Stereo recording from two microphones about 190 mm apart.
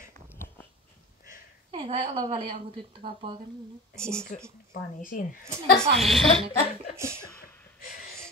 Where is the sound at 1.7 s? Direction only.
30° right (ahead or behind).